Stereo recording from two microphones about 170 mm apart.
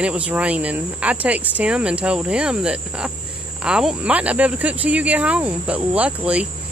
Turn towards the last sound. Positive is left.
turn(degrees=-5)  # may be behind; listen again after turning